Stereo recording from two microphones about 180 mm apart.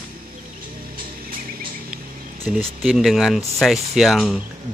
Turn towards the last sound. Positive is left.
turn(degrees=0)  # may be behind; listen again after turning